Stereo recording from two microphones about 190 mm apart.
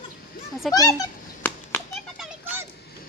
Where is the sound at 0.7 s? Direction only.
20° left (ahead or behind).